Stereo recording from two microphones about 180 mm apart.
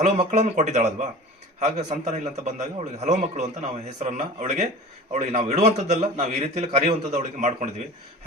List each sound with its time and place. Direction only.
0.0 s a man's voice: 40° right (ahead or behind)